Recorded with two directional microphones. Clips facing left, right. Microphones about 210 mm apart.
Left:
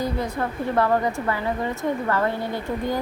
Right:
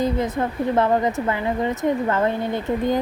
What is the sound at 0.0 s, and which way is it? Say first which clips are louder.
A woman's voice: right 4 dB; 20° right (ahead or behind).